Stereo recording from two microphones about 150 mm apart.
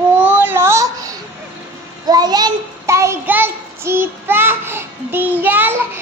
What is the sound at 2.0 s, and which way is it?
Child singing, 25° right (ahead or behind).